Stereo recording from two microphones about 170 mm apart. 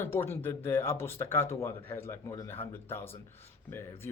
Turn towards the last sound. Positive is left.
turn(degrees=15)  # may be behind; listen again after turning